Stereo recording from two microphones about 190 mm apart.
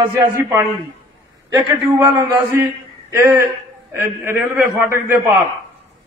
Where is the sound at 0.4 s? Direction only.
15° right (ahead or behind).